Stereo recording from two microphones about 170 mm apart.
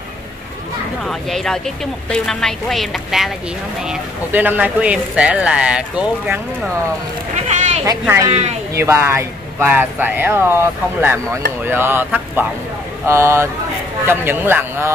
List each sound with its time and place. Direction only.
1.0 s a woman's voice: 5° left (ahead or behind)
7.3 s a sound: 40° right (ahead or behind)
8.7 s speech: 15° right (ahead or behind)